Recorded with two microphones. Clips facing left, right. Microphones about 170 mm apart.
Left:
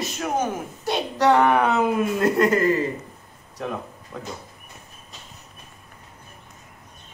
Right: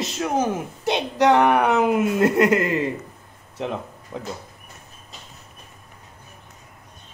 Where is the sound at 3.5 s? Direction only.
20° right (ahead or behind).